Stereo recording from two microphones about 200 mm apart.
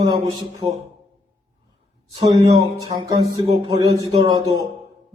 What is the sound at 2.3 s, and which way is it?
Speech, 15° right (ahead or behind).